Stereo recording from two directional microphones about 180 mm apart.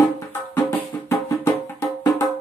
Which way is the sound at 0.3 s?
15° left (ahead or behind).